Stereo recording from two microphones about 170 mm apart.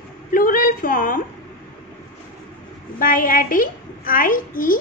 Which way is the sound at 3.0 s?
55° left (ahead or behind).